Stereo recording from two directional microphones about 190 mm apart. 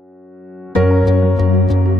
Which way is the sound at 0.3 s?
Centre (ahead or behind).